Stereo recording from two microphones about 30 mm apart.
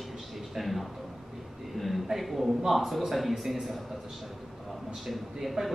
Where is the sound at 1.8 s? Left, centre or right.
Centre.